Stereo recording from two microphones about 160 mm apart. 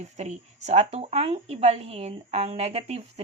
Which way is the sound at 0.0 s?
45° right (ahead or behind).